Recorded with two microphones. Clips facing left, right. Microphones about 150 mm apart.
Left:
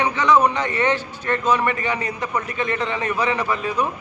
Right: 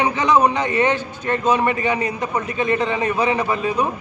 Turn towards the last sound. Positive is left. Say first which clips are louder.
# right 2 dB
turn(degrees=-25)  # may be behind; listen again after turning